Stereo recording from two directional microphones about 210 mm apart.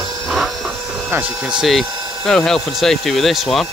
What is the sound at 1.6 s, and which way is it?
Speech, centre (ahead or behind).